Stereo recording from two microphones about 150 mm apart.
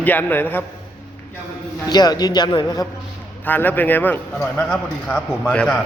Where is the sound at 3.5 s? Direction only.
10° left (ahead or behind).